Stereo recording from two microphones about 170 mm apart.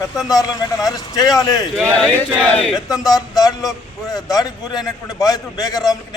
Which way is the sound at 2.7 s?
20° left (ahead or behind).